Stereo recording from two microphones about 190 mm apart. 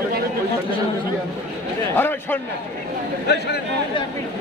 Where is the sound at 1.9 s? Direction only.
10° left (ahead or behind).